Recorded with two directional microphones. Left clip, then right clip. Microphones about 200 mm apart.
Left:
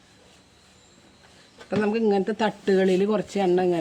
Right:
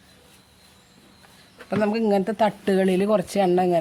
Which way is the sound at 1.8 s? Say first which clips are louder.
Right 1 dB; 65° right (ahead or behind).